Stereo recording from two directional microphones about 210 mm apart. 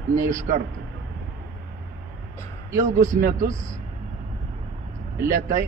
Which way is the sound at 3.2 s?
40° right (ahead or behind).